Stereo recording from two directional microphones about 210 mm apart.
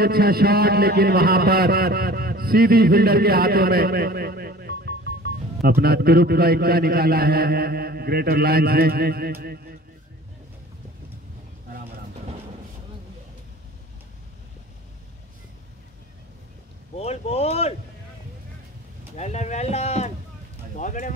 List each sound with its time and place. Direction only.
0.0 s a man's voice: 45° right (ahead or behind)
16.9 s speech: 30° left (ahead or behind)
19.1 s speech: 30° left (ahead or behind)